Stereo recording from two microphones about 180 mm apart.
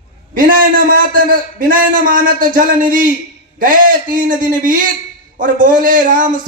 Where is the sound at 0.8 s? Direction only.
50° right (ahead or behind).